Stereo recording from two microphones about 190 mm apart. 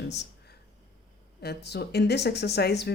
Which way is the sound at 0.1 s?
65° left (ahead or behind).